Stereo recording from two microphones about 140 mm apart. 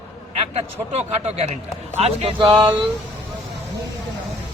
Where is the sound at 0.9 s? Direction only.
50° right (ahead or behind).